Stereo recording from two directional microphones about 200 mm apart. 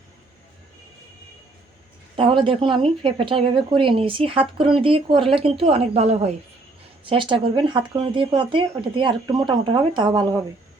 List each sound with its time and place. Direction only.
2.1 s a woman's voice: 25° right (ahead or behind)